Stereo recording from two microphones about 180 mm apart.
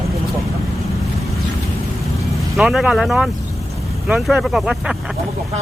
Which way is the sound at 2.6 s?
5° right (ahead or behind).